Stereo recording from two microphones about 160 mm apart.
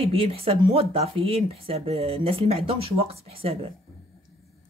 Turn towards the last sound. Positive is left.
turn(degrees=-35)  # may be behind; listen again after turning